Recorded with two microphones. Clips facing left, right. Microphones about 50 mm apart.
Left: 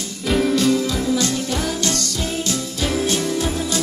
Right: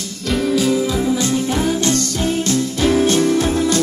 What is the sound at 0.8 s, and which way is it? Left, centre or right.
Music, centre.